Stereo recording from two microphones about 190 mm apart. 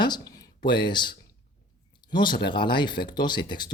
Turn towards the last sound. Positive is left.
turn(degrees=25)  # may be behind; listen again after turning